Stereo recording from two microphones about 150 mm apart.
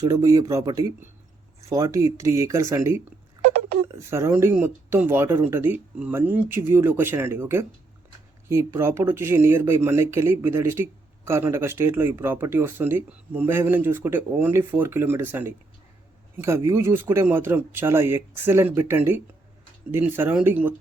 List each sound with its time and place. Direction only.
0.0 s speech: 25° right (ahead or behind)